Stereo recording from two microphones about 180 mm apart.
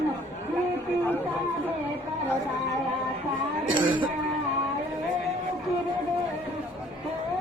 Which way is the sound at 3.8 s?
25° right (ahead or behind).